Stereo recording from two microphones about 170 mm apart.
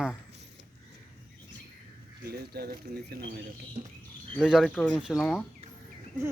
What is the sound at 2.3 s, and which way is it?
Speech, 65° right (ahead or behind).